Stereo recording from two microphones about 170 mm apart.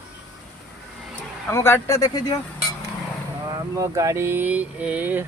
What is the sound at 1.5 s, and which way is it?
Speech, 15° left (ahead or behind).